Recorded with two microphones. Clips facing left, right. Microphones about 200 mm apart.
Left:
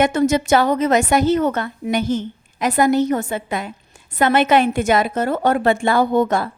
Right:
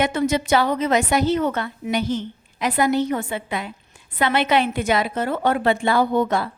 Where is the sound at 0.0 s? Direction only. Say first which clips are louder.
Left 4 dB; 45° left (ahead or behind).